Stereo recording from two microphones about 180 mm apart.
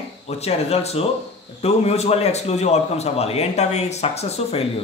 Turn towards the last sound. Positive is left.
turn(degrees=35)  # may be behind; listen again after turning